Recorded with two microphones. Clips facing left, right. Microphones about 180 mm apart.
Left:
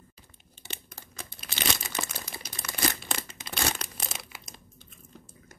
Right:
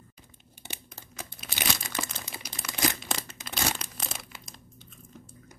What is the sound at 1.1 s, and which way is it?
Crumpling, 10° right (ahead or behind).